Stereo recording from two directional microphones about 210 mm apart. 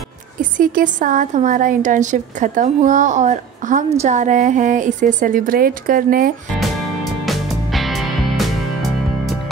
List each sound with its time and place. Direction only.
0.4 s a woman's voice: 40° right (ahead or behind)
7.2 s music: centre (ahead or behind)